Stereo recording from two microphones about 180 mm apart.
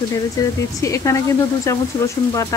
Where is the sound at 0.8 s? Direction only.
15° left (ahead or behind).